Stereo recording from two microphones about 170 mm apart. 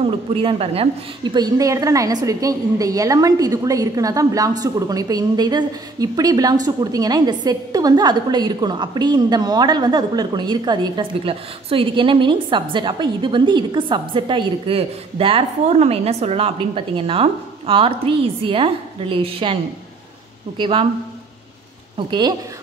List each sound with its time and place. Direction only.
0.0 s a woman's voice: 35° right (ahead or behind)
21.9 s a woman's voice: 25° right (ahead or behind)